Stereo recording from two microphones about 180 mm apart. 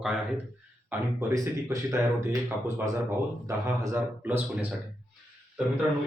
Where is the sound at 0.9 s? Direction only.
15° right (ahead or behind).